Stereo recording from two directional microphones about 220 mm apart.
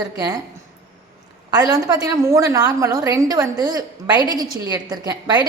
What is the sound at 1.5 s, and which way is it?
A woman's voice, 20° right (ahead or behind).